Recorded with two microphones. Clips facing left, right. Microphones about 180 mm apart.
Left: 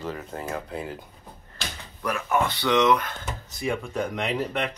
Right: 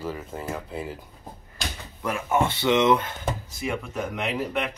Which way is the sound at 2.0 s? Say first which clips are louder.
Right 1 dB; 25° right (ahead or behind).